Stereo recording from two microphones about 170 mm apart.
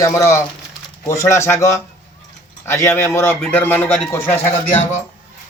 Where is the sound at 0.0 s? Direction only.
15° left (ahead or behind).